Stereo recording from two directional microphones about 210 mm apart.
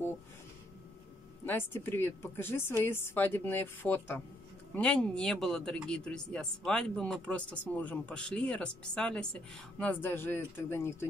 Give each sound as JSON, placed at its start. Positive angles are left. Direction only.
{"t": 1.4, "sound": "a woman's voice", "side_deg": 10}